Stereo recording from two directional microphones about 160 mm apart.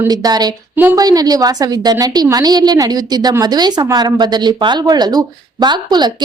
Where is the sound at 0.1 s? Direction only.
25° right (ahead or behind).